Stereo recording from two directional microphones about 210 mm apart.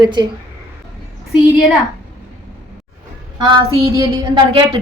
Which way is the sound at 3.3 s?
20° right (ahead or behind).